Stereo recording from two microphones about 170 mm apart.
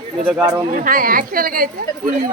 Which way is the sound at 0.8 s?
55° right (ahead or behind).